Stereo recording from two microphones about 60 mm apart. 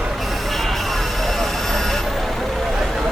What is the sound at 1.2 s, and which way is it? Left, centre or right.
Vehicle, centre.